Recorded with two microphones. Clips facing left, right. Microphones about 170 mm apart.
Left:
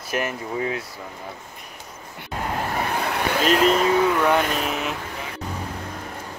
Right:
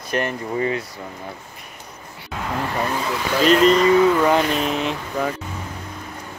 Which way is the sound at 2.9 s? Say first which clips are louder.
Right 1 dB; 60° left (ahead or behind).